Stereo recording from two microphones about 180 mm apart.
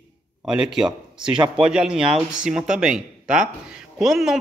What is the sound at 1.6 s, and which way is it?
A man's voice, 5° right (ahead or behind).